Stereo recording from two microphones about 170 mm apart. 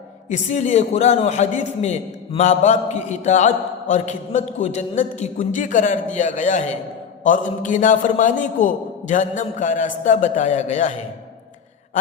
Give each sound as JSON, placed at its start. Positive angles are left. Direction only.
{"t": 0.3, "sound": "a man's voice", "side_deg": 45}